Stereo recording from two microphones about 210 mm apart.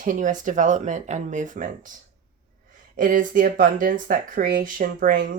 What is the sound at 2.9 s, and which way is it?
Speech, 40° right (ahead or behind).